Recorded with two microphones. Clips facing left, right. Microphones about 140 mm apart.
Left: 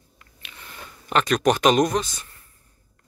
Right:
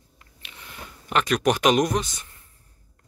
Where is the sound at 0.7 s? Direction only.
10° right (ahead or behind).